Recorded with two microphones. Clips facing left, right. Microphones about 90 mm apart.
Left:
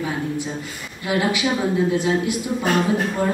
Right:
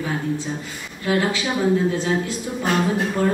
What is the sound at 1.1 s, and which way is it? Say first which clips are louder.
A woman's voice: even; 20° left (ahead or behind).